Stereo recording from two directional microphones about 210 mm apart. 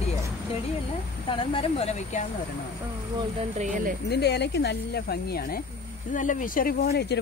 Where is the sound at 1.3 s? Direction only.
25° left (ahead or behind).